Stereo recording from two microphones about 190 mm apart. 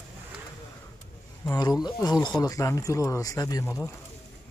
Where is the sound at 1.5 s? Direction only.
20° left (ahead or behind).